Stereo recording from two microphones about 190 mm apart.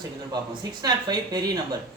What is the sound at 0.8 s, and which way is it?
Speech, 20° right (ahead or behind).